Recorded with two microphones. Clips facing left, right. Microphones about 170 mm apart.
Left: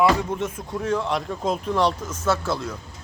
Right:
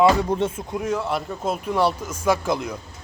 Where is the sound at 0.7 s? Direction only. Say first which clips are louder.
Left 4 dB; 10° right (ahead or behind).